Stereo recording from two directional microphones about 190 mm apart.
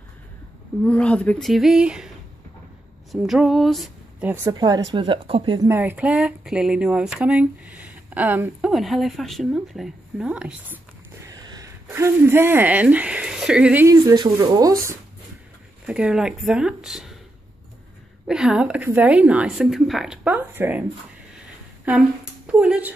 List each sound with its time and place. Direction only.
0.8 s speech: 5° left (ahead or behind)
3.1 s a woman's voice: centre (ahead or behind)
4.5 s speech: 20° right (ahead or behind)
5.7 s speech: 10° right (ahead or behind)
13.8 s speech: 15° right (ahead or behind)
15.9 s speech: 5° right (ahead or behind)
18.2 s a woman's voice: 5° right (ahead or behind)
21.8 s speech: 5° right (ahead or behind)